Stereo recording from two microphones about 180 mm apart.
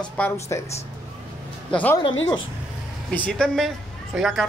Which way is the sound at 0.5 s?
15° left (ahead or behind).